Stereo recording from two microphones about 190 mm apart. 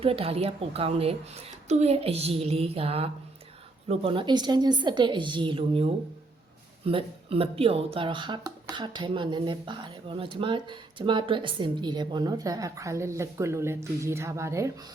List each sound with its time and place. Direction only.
0.0 s speech: 30° right (ahead or behind); by 14.7 s 15° right (ahead or behind)